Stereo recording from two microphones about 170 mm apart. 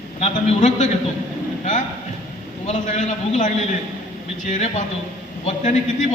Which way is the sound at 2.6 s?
45° left (ahead or behind).